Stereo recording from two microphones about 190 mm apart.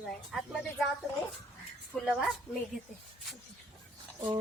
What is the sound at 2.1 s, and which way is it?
Speech, centre (ahead or behind).